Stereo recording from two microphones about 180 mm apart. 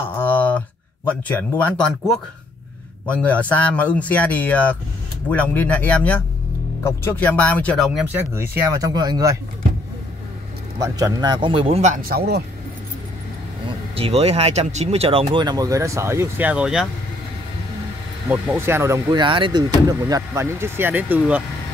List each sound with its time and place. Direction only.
0.0 s speech: 10° left (ahead or behind)
8.1 s speech: 15° right (ahead or behind)
10.8 s speech: 20° right (ahead or behind); by 12.4 s 60° right (ahead or behind)
13.9 s speech: 35° right (ahead or behind); by 16.8 s 5° right (ahead or behind)
18.3 s speech: 10° right (ahead or behind)